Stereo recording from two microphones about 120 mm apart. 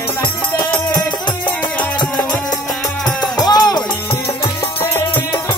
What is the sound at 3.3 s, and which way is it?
Music, 35° left (ahead or behind).